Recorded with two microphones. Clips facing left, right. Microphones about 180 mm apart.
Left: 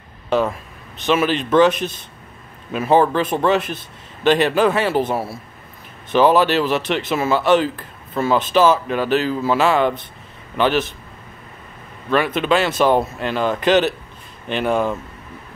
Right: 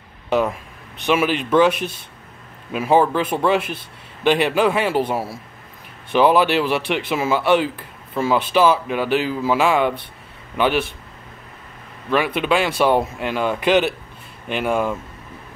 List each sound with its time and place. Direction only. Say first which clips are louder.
0.3 s a man's voice: left 1 dB; 15° right (ahead or behind)
12.1 s speech: left 1 dB; 10° right (ahead or behind)